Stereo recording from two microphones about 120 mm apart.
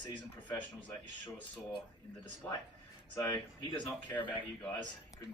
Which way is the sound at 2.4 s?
10° left (ahead or behind).